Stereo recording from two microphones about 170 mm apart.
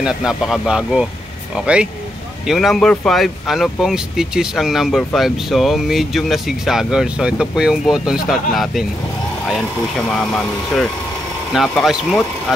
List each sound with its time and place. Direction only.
0.0 s speech: 5° right (ahead or behind)
2.4 s speech: centre (ahead or behind)
10.1 s speech: centre (ahead or behind)